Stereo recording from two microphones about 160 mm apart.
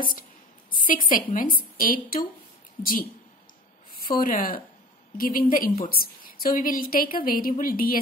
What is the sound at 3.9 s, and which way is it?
A woman's voice, 65° left (ahead or behind).